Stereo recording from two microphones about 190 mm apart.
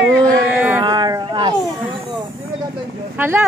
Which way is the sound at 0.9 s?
25° right (ahead or behind).